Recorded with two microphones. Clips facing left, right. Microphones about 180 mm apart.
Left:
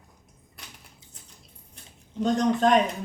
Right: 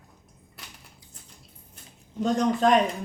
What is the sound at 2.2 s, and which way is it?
Speech, centre (ahead or behind).